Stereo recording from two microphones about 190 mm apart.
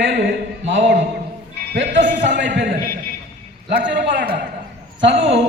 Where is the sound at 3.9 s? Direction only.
70° right (ahead or behind).